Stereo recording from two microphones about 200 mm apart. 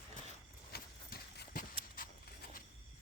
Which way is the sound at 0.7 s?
50° left (ahead or behind).